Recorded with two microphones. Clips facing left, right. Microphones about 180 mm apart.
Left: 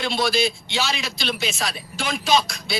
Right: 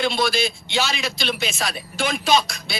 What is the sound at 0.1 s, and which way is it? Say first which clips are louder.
Speech: left 1 dB; 55° right (ahead or behind).